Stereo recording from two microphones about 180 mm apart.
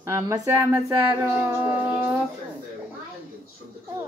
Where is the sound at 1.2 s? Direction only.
15° right (ahead or behind).